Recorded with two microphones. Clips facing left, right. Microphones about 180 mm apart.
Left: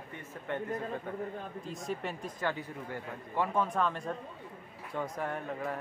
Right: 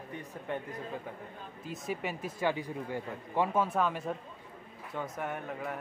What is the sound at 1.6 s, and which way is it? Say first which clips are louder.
Speech: right 3 dB; 5° right (ahead or behind).